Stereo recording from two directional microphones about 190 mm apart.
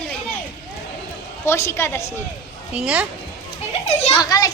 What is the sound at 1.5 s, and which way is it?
Speech, 15° left (ahead or behind).